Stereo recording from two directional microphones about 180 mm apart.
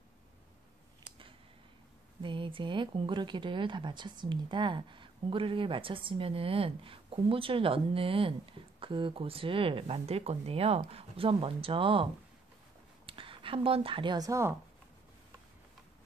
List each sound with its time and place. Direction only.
2.2 s speech: 30° right (ahead or behind)